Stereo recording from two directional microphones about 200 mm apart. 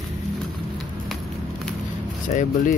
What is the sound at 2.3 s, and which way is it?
Speech, 40° left (ahead or behind).